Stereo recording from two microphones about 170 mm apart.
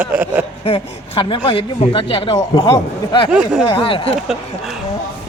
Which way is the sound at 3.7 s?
30° left (ahead or behind).